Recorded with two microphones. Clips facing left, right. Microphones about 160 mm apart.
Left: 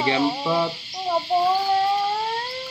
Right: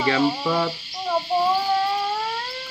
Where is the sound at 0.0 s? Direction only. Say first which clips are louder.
Right 1 dB; 20° left (ahead or behind).